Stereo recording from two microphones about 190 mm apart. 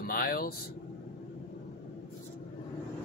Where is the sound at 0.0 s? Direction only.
50° left (ahead or behind).